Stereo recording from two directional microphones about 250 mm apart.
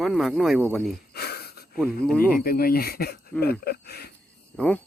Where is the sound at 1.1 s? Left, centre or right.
Left.